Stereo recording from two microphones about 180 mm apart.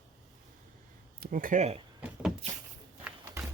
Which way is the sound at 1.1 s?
55° right (ahead or behind).